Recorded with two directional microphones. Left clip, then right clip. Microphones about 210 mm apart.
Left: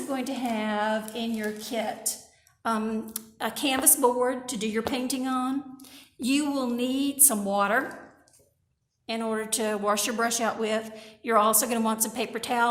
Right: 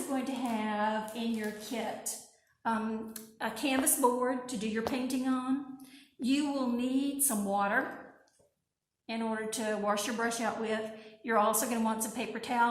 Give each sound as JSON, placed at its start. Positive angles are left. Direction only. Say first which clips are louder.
{"t": 0.1, "sound": "a woman's voice", "louder": "left 5 dB", "side_deg": 50}
{"t": 9.0, "sound": "a woman's voice", "louder": "left 6 dB", "side_deg": 50}